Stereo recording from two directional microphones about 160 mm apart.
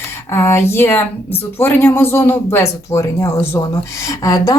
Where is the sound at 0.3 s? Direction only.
15° left (ahead or behind).